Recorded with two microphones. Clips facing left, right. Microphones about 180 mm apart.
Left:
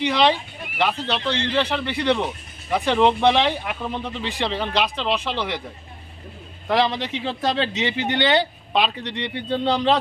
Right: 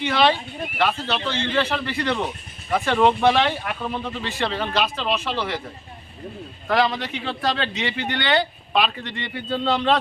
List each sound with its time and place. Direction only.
0.0 s speech: 20° left (ahead or behind)
6.7 s speech: 20° left (ahead or behind)